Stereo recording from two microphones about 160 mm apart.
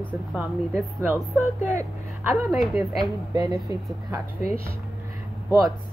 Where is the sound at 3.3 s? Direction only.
25° right (ahead or behind).